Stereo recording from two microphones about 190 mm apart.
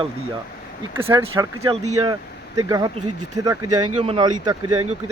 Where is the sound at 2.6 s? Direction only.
20° right (ahead or behind).